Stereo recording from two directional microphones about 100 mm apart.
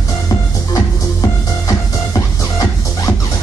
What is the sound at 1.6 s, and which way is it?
Music, 35° left (ahead or behind).